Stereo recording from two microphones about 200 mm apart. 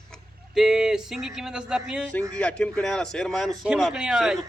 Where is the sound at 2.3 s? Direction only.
5° left (ahead or behind).